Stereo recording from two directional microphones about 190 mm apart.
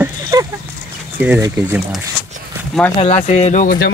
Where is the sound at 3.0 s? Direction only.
35° left (ahead or behind).